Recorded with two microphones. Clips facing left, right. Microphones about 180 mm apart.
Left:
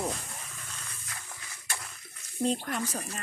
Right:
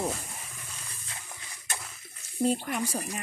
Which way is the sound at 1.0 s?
25° right (ahead or behind).